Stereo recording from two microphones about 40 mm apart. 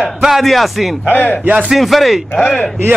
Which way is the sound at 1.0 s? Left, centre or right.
Left.